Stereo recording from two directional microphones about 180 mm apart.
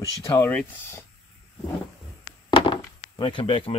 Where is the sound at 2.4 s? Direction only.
25° left (ahead or behind).